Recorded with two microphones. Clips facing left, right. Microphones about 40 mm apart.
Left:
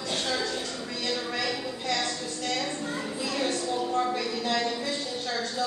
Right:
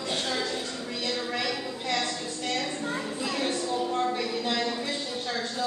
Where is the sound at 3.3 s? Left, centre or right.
Right.